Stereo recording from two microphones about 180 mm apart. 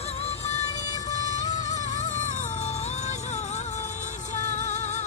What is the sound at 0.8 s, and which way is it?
Vehicle, 20° left (ahead or behind).